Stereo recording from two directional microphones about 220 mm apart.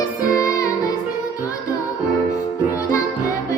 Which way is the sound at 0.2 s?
15° left (ahead or behind).